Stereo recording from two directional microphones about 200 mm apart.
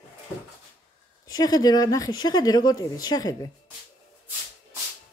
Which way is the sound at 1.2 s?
20° left (ahead or behind).